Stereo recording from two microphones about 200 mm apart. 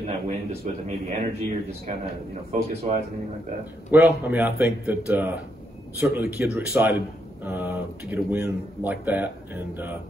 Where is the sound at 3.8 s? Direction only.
10° right (ahead or behind).